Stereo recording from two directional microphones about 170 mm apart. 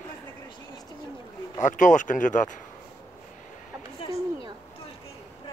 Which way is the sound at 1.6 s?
50° left (ahead or behind).